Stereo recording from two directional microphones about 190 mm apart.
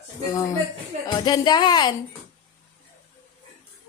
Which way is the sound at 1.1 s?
20° left (ahead or behind).